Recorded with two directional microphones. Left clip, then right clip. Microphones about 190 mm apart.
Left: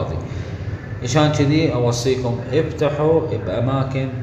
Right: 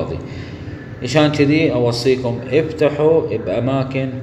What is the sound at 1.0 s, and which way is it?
Speech, 35° left (ahead or behind).